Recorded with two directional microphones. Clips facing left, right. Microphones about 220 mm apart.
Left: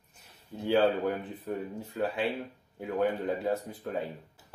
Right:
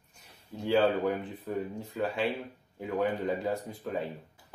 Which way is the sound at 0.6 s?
Centre (ahead or behind).